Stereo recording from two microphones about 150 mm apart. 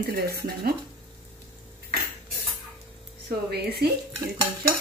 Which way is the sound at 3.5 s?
90° right.